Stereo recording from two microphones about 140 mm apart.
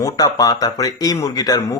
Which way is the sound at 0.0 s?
25° left (ahead or behind).